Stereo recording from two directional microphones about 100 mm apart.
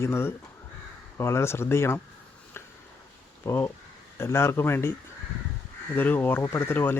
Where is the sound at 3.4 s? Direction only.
30° left (ahead or behind).